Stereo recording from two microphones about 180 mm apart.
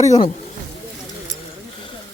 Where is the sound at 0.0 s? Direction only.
40° left (ahead or behind).